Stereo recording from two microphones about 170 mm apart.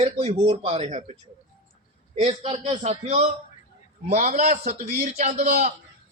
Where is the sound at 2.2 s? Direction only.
35° right (ahead or behind).